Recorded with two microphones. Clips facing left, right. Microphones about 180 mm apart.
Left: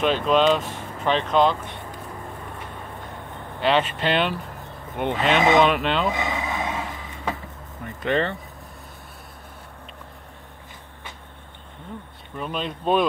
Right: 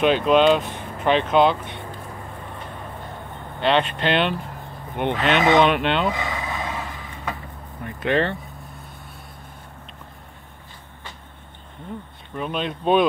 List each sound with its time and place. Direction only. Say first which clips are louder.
0.0 s speech: right 3 dB; centre (ahead or behind)
3.6 s speech: right 1 dB; 5° left (ahead or behind)
6.1 s vehicle: left 1 dB; 20° left (ahead or behind)
7.8 s speech: right 2 dB; centre (ahead or behind)
12.4 s speech: right 2 dB; centre (ahead or behind)